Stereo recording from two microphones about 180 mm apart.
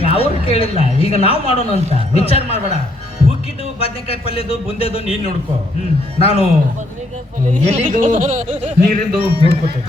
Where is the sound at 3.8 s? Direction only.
30° left (ahead or behind).